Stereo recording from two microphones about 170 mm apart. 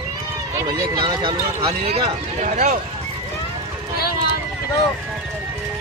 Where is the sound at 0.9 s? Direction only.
25° right (ahead or behind); by 2.8 s 45° right (ahead or behind).